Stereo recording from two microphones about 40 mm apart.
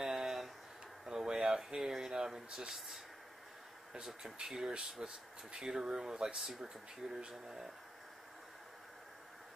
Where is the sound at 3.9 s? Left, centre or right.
Centre.